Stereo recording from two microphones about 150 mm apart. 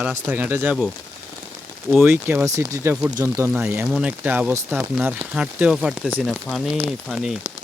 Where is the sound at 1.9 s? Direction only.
15° right (ahead or behind).